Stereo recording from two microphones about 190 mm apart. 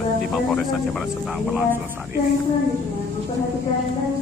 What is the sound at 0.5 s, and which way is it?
Speech, centre (ahead or behind).